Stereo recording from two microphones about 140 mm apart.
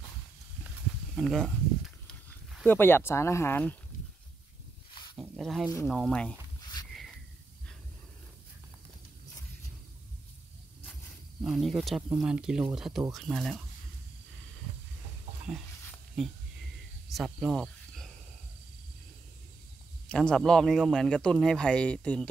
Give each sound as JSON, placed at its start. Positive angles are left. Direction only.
{"t": 1.1, "sound": "speech", "side_deg": 5}
{"t": 2.0, "sound": "a sound", "side_deg": 5}
{"t": 2.7, "sound": "speech", "side_deg": 15}
{"t": 5.1, "sound": "speech", "side_deg": -5}
{"t": 11.4, "sound": "speech", "side_deg": -5}
{"t": 16.2, "sound": "speech", "side_deg": 0}
{"t": 17.1, "sound": "cricket", "side_deg": 0}
{"t": 20.1, "sound": "speech", "side_deg": 5}